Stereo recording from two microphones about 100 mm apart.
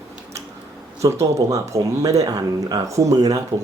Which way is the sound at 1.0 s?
30° right (ahead or behind).